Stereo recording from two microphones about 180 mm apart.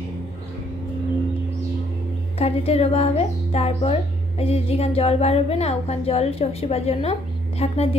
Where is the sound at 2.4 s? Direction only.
35° left (ahead or behind).